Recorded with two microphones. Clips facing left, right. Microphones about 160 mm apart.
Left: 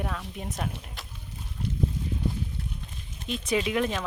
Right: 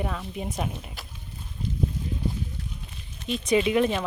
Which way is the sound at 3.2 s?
Centre (ahead or behind).